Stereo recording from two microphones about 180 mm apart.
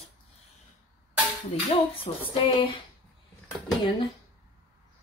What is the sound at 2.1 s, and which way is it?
Speech, 30° left (ahead or behind).